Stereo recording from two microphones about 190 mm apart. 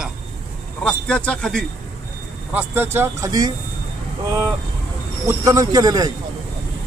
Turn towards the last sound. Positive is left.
turn(degrees=-20)  # may be behind; listen again after turning